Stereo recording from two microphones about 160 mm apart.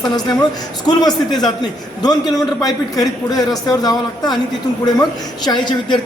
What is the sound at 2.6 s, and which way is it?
A man's voice, 25° left (ahead or behind).